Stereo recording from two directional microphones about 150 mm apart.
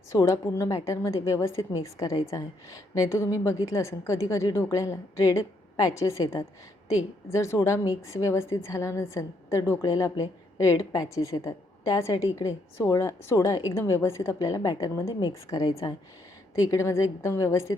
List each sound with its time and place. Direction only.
0.1 s a woman's voice: 20° left (ahead or behind)